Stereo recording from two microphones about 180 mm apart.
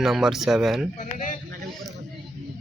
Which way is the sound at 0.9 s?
40° left (ahead or behind).